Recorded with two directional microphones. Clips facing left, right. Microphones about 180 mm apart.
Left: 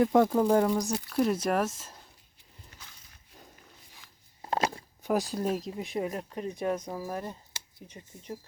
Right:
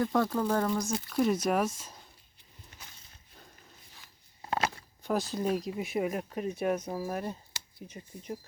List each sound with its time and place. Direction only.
0.0 s speech: 15° left (ahead or behind)
1.1 s speech: centre (ahead or behind)
4.4 s a sound: 30° left (ahead or behind)
5.0 s speech: 10° left (ahead or behind); by 7.3 s 15° right (ahead or behind)
8.1 s speech: 25° left (ahead or behind)